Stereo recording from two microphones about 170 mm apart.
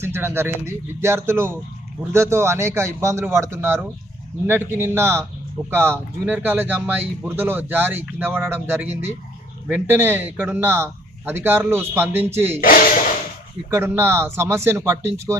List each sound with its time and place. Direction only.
0.0 s a man's voice: 15° right (ahead or behind)
12.5 s speech: 55° left (ahead or behind)
13.7 s a man's voice: 15° right (ahead or behind)